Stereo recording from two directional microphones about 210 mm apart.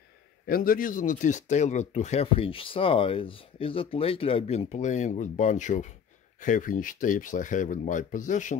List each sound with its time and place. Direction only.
0.5 s speech: 45° left (ahead or behind)